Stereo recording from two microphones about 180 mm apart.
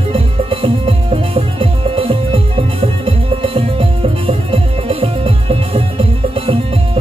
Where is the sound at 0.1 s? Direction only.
30° right (ahead or behind).